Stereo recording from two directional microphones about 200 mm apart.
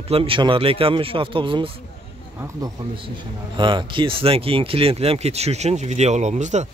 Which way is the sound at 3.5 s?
25° right (ahead or behind).